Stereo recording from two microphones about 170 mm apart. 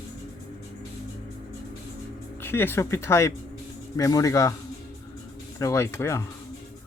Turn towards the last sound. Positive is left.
turn(degrees=15)  # may be behind; listen again after turning